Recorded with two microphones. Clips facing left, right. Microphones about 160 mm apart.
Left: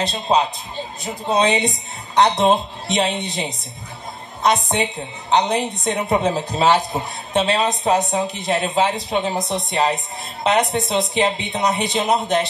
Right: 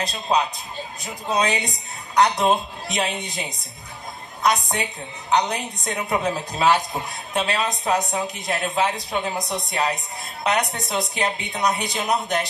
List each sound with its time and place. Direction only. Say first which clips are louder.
0.0 s speech: left 4 dB; 25° left (ahead or behind)